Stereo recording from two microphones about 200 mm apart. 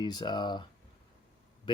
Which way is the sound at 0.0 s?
20° left (ahead or behind).